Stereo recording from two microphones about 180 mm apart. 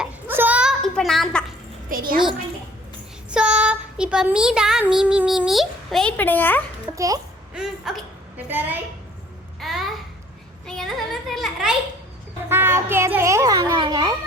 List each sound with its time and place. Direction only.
0.0 s a sound: 10° right (ahead or behind)
1.9 s a child's voice: 55° right (ahead or behind)
3.2 s speech: 5° right (ahead or behind)
6.9 s a child's voice: 20° right (ahead or behind)
7.5 s a woman's voice: centre (ahead or behind)
9.6 s babbling: centre (ahead or behind)
10.7 s a sound: centre (ahead or behind)
12.5 s a child's voice: 10° right (ahead or behind)